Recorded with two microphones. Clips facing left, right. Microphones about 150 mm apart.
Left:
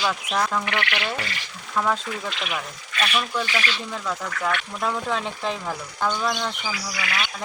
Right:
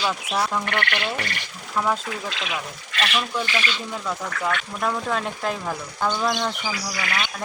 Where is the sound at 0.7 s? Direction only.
50° right (ahead or behind).